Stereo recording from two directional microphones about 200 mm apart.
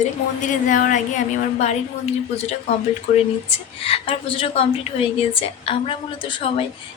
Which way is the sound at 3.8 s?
30° left (ahead or behind).